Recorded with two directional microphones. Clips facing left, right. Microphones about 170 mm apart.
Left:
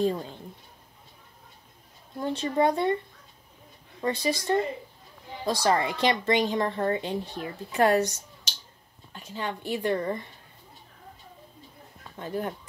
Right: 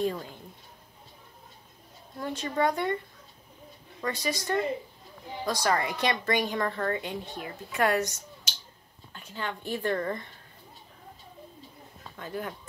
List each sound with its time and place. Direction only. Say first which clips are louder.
0.0 s speech: left 3 dB; 25° left (ahead or behind)
2.1 s speech: left 4 dB; 25° left (ahead or behind)
4.0 s speech: left 4 dB; 30° left (ahead or behind)
9.3 s speech: left 2 dB; 20° left (ahead or behind)
12.2 s speech: left 4 dB; 30° left (ahead or behind)